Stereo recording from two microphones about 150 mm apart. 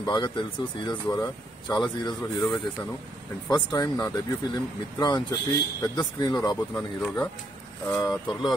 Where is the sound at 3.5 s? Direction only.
30° left (ahead or behind).